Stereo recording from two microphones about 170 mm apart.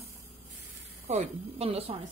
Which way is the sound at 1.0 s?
40° right (ahead or behind).